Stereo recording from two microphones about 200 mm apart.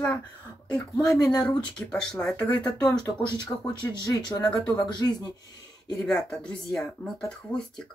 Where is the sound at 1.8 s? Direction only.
5° left (ahead or behind).